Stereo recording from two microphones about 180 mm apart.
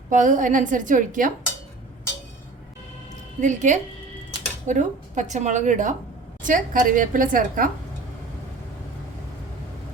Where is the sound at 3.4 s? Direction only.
45° right (ahead or behind).